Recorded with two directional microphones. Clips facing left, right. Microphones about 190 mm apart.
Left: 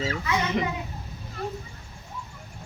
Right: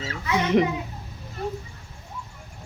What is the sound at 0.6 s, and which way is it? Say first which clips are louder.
Speech: right 10 dB; 50° right (ahead or behind).